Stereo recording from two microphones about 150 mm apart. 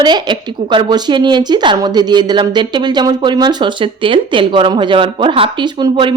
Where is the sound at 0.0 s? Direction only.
30° right (ahead or behind).